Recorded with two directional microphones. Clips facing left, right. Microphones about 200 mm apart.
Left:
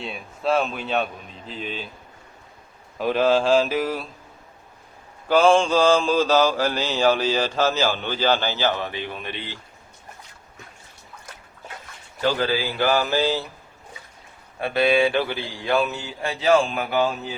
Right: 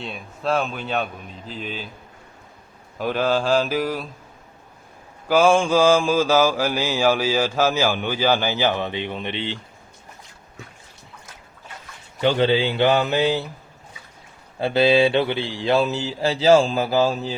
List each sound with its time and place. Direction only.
0.0 s speech: centre (ahead or behind)
3.0 s speech: centre (ahead or behind)
5.3 s mantra: 10° right (ahead or behind)
12.2 s speech: 25° right (ahead or behind)
14.6 s speech: 25° right (ahead or behind)